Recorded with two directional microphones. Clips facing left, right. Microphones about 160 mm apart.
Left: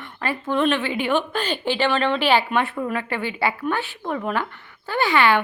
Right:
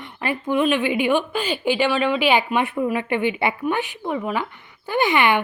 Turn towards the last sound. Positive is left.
turn(degrees=-20)  # may be behind; listen again after turning